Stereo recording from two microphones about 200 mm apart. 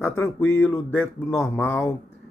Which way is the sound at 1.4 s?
10° left (ahead or behind).